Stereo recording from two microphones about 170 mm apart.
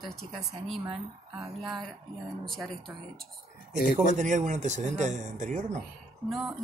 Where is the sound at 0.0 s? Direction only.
Centre (ahead or behind).